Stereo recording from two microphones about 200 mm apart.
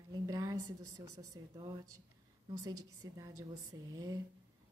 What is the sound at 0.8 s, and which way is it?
Speech, 15° right (ahead or behind).